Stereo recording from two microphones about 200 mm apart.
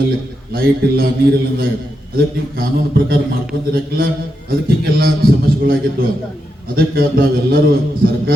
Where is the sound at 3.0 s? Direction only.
50° right (ahead or behind).